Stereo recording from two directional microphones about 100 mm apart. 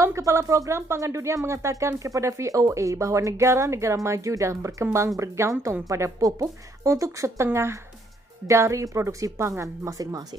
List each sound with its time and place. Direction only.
0.0 s speech: 30° right (ahead or behind)